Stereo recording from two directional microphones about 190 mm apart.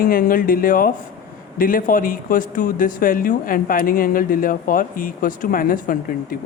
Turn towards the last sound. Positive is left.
turn(degrees=50)  # may be behind; listen again after turning